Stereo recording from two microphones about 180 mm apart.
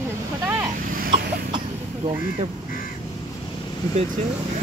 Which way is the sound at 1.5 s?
30° right (ahead or behind).